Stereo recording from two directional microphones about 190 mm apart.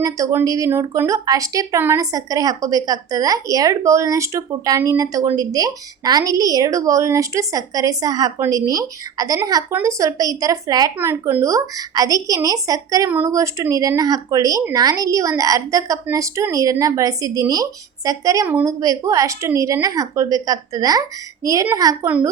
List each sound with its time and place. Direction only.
0.0 s a woman's voice: 15° right (ahead or behind)